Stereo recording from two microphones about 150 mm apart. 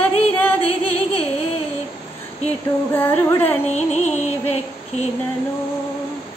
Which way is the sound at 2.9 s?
15° left (ahead or behind).